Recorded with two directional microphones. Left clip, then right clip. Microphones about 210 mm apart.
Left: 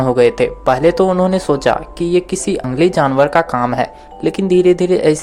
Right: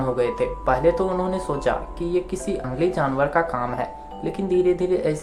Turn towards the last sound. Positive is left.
turn(degrees=45)  # may be behind; listen again after turning